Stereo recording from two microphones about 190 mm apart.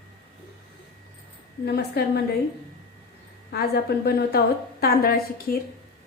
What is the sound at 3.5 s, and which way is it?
A woman's voice, 55° left (ahead or behind).